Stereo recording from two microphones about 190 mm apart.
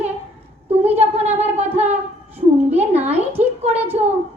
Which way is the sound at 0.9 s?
35° right (ahead or behind).